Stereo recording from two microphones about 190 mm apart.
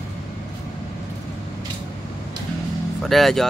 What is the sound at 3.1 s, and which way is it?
Speech, centre (ahead or behind).